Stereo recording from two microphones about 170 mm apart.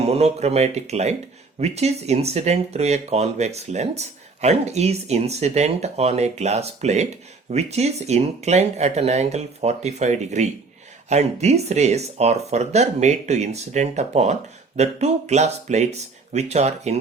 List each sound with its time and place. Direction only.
0.0 s speech: 40° right (ahead or behind)